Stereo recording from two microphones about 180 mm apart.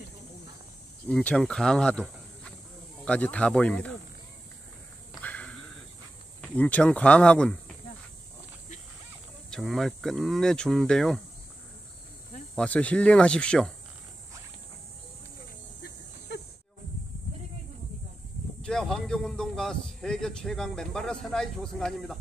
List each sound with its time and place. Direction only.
1.0 s speech: 5° left (ahead or behind)
5.2 s insect: 10° left (ahead or behind)
6.5 s speech: 10° left (ahead or behind)
9.5 s speech: centre (ahead or behind)
12.5 s speech: 5° left (ahead or behind)
18.6 s speech: 5° left (ahead or behind)